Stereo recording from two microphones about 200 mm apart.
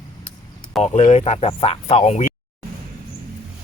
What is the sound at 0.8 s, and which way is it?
Speech, 35° left (ahead or behind).